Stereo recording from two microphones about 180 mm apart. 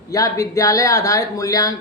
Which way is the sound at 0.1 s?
20° left (ahead or behind).